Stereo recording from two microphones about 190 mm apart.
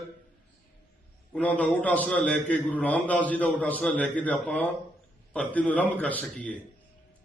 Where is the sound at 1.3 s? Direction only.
5° left (ahead or behind).